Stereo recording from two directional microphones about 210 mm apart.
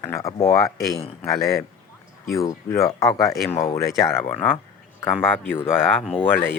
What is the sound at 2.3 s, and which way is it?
Speech, 15° left (ahead or behind).